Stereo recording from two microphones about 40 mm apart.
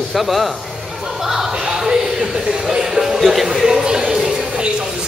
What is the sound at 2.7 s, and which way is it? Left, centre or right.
Music, centre.